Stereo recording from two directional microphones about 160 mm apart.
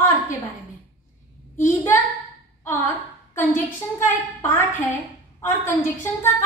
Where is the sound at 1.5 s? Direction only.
15° left (ahead or behind).